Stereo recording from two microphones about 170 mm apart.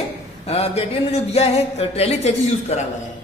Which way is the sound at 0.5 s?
35° left (ahead or behind).